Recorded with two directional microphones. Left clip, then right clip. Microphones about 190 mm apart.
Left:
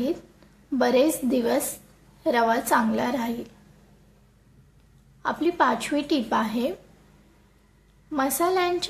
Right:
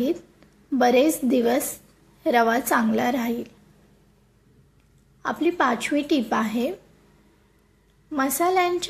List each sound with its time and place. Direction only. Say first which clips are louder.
0.7 s a woman's voice: right 2 dB; 15° right (ahead or behind)
5.2 s a woman's voice: even; 10° right (ahead or behind)
8.1 s a woman's voice: right 1 dB; 10° right (ahead or behind)